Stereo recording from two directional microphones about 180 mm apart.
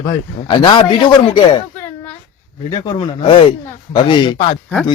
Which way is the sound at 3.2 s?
30° left (ahead or behind).